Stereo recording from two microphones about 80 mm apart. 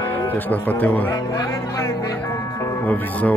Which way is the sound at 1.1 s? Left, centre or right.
Left.